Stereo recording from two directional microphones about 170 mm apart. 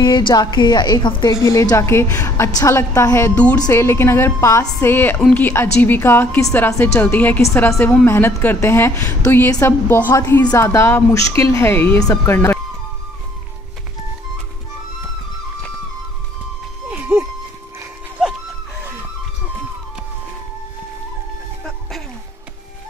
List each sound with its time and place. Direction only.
0.0 s a woman's voice: 25° left (ahead or behind)
16.9 s dog: 15° right (ahead or behind)